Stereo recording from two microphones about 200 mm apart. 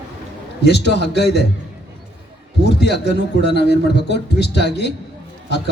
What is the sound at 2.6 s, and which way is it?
A man's voice, 55° left (ahead or behind).